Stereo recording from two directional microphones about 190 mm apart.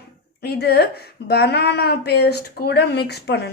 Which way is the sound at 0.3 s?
60° left (ahead or behind).